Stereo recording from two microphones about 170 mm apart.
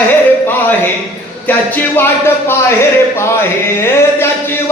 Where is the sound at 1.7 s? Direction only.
10° left (ahead or behind).